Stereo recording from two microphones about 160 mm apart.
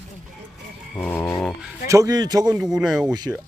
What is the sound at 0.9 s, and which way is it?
Cat, 10° left (ahead or behind).